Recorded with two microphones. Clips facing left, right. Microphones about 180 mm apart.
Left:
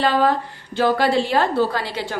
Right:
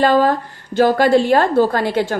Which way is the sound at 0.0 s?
45° right (ahead or behind).